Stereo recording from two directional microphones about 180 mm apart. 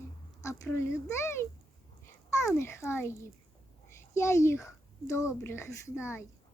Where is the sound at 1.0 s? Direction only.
15° left (ahead or behind).